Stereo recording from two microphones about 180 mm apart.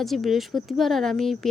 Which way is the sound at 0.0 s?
Centre (ahead or behind).